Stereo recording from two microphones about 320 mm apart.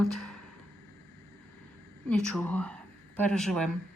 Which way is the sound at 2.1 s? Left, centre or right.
Centre.